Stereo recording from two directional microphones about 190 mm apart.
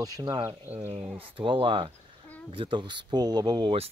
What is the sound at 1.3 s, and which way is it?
Speech, 25° right (ahead or behind).